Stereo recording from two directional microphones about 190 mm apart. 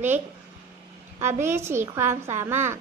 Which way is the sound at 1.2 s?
15° right (ahead or behind).